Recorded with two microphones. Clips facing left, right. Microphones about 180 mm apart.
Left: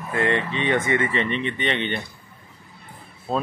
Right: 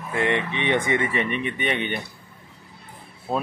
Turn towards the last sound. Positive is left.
turn(degrees=-15)  # may be behind; listen again after turning